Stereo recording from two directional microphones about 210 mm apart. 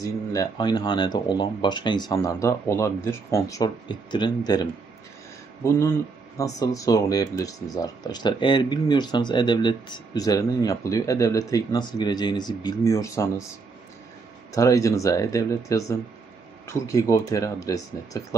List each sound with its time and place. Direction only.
0.3 s speech: 20° left (ahead or behind)
14.5 s speech: 15° left (ahead or behind)